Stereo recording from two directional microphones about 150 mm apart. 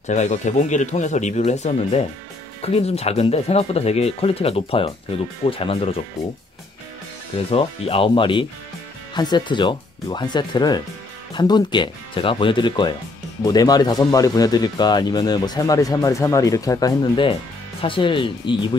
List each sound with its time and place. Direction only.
0.0 s speech: 50° left (ahead or behind)
7.5 s speech: 40° left (ahead or behind)